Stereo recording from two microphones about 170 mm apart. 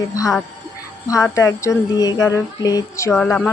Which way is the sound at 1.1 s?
20° left (ahead or behind).